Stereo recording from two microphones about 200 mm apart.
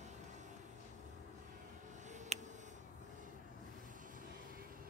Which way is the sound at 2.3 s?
35° right (ahead or behind).